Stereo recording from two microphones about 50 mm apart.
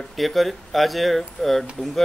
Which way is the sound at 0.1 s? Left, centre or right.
Centre.